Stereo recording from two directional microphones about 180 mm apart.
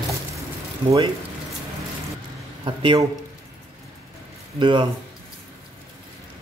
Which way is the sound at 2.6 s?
25° right (ahead or behind).